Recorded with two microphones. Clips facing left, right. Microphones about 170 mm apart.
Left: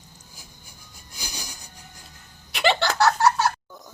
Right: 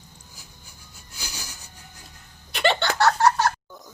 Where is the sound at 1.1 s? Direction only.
15° left (ahead or behind).